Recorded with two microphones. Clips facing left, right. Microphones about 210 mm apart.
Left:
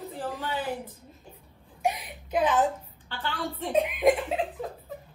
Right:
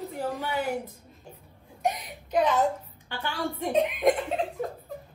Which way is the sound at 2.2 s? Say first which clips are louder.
Right 1 dB; 5° left (ahead or behind).